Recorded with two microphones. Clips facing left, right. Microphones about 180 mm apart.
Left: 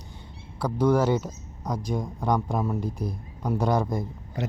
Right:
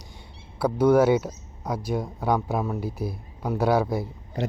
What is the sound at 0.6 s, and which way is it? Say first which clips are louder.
Speech: right 4 dB; 10° right (ahead or behind).